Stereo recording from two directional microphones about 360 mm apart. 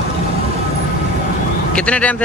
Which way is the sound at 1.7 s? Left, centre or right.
Centre.